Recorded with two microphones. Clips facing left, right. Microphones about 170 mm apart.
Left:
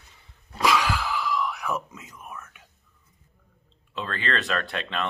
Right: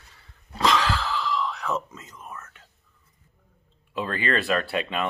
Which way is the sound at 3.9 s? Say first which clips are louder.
Right 3 dB; 10° right (ahead or behind).